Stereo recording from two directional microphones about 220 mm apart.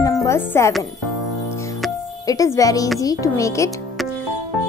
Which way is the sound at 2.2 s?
15° left (ahead or behind).